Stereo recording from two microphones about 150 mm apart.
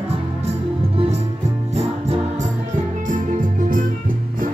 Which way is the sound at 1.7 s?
45° right (ahead or behind).